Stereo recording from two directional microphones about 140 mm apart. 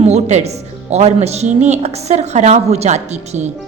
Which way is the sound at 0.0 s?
55° right (ahead or behind).